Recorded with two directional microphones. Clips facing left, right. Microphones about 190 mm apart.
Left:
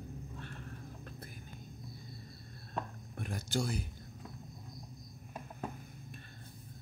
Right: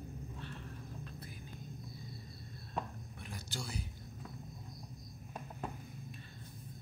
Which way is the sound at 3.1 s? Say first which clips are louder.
Left 11 dB; 50° left (ahead or behind).